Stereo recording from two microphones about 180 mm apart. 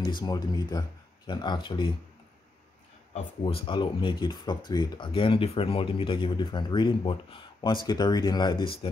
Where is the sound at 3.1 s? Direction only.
30° left (ahead or behind).